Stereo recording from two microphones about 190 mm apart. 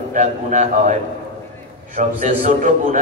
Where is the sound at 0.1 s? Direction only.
40° right (ahead or behind).